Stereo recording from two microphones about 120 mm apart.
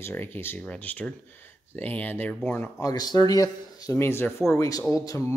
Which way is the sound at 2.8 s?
35° left (ahead or behind).